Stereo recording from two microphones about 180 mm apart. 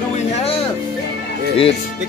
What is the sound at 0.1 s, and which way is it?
Music, 35° left (ahead or behind).